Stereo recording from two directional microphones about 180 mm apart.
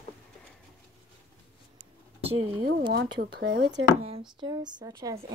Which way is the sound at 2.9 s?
65° right (ahead or behind).